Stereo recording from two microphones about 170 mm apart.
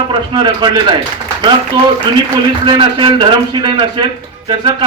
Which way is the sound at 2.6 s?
25° right (ahead or behind).